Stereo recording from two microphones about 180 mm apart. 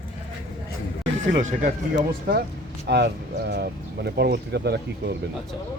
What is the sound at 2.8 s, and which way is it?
Speech, 70° right (ahead or behind).